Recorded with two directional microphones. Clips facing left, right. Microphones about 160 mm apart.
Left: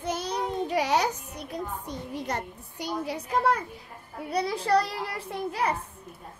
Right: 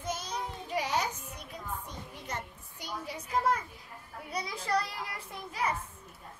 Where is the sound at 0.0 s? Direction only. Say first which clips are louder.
Left 7 dB; 65° left (ahead or behind).